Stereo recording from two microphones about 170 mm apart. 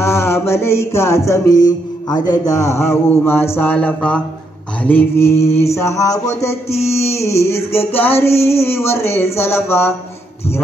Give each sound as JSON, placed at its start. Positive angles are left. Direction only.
{"t": 0.0, "sound": "music", "side_deg": 15}